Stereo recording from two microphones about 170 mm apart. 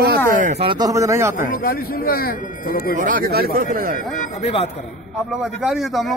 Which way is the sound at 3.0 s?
55° right (ahead or behind).